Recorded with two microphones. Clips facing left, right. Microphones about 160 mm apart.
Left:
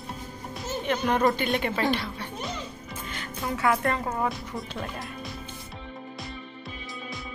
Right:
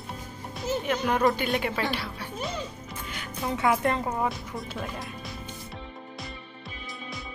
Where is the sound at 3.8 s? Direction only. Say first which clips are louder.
Right 1 dB; 15° right (ahead or behind).